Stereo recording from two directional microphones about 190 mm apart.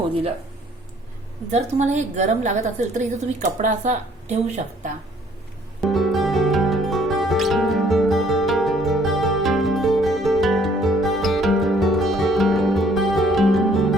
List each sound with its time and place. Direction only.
1.5 s a woman's voice: 40° right (ahead or behind)
5.9 s music: centre (ahead or behind)